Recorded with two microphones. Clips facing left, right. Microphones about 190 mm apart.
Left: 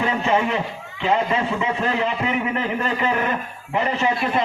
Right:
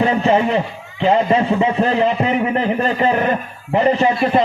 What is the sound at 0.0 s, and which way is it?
A man's voice, 35° right (ahead or behind).